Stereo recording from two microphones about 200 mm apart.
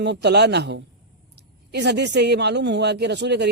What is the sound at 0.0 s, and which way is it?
A man's voice, 55° right (ahead or behind).